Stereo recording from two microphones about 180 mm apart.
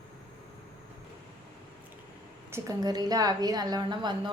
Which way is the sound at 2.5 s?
20° right (ahead or behind).